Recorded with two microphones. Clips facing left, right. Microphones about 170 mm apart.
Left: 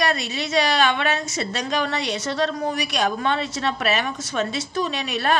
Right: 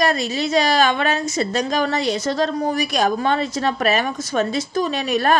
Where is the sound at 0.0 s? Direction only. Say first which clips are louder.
Right 4 dB; 40° right (ahead or behind).